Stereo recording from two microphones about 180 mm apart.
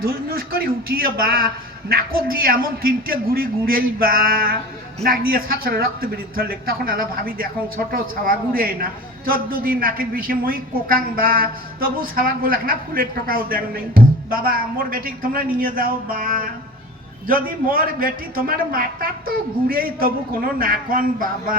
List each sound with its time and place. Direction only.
0.0 s a man's voice: 55° right (ahead or behind)